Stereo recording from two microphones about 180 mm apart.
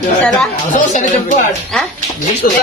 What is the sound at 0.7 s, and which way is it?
Speech, 45° left (ahead or behind).